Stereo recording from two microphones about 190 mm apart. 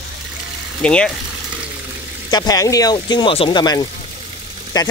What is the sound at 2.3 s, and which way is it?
Speech, 20° left (ahead or behind).